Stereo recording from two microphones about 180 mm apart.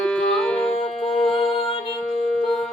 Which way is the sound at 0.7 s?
35° left (ahead or behind).